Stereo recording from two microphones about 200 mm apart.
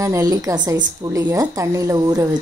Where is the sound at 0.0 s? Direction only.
15° right (ahead or behind).